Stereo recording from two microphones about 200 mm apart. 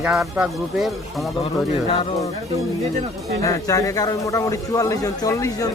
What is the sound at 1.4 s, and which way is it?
Speech, 30° left (ahead or behind).